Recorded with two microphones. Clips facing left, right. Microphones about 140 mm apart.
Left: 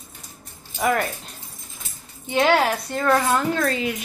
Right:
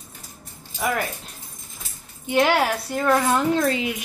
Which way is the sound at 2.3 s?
10° right (ahead or behind).